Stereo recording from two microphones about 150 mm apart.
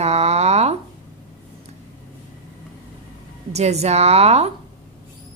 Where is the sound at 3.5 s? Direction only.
45° right (ahead or behind).